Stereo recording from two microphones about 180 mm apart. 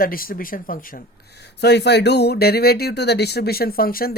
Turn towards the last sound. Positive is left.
turn(degrees=55)  # may be behind; listen again after turning